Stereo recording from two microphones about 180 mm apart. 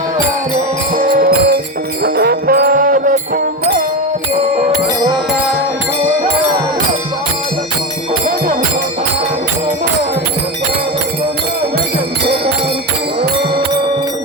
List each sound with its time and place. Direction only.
1.0 s music: 50° right (ahead or behind)